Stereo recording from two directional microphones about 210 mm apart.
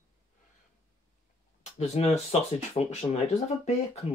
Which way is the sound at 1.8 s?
30° left (ahead or behind).